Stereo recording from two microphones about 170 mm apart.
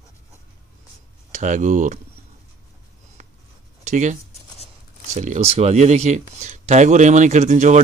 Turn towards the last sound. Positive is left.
turn(degrees=-45)  # may be behind; listen again after turning